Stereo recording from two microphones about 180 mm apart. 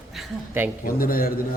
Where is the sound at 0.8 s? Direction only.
55° left (ahead or behind).